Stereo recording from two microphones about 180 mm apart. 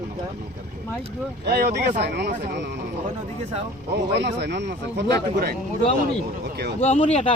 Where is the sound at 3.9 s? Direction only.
65° right (ahead or behind).